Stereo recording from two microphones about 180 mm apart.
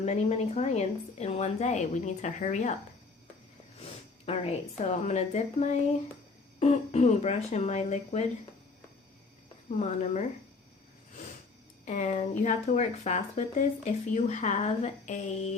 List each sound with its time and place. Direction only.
0.0 s speech: 40° left (ahead or behind)
4.3 s speech: 35° left (ahead or behind)
9.6 s speech: 40° left (ahead or behind)
11.9 s speech: 40° left (ahead or behind)